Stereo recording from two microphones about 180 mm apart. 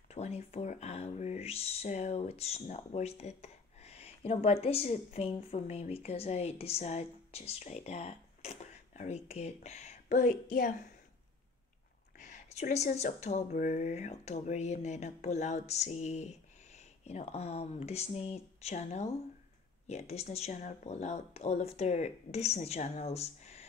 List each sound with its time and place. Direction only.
0.1 s speech: 35° left (ahead or behind)
12.2 s speech: 40° left (ahead or behind)